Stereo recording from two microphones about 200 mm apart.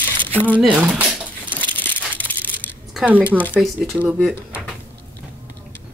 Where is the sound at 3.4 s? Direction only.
10° left (ahead or behind).